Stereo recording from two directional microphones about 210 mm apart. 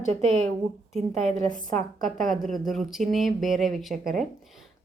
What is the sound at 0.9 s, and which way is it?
Speech, centre (ahead or behind).